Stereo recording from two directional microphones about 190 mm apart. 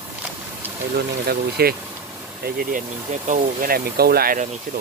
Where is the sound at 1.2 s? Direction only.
55° right (ahead or behind).